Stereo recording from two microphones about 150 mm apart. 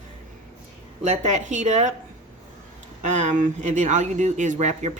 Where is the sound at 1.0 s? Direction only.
55° right (ahead or behind).